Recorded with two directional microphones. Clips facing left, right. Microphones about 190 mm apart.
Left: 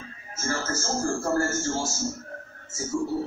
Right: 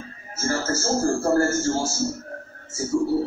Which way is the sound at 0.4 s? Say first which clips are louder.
Right 5 dB; 40° right (ahead or behind).